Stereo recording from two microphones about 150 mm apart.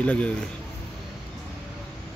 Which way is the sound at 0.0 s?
10° left (ahead or behind).